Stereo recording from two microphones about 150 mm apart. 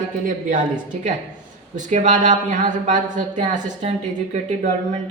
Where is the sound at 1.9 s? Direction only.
55° right (ahead or behind).